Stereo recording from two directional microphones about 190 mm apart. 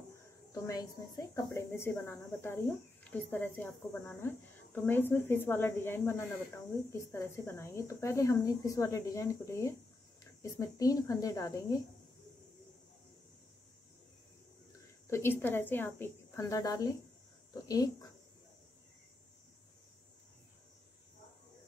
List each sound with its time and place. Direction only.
1.3 s speech: 15° left (ahead or behind)
15.0 s speech: 15° left (ahead or behind)